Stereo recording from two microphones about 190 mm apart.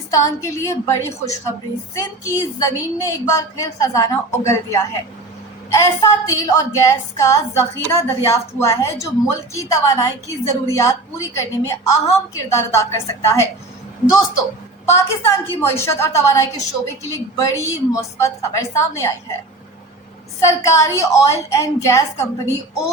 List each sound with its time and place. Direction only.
0.1 s a woman's voice: 15° left (ahead or behind)
14.8 s a woman's voice: 15° left (ahead or behind)
20.4 s a woman's voice: 15° left (ahead or behind)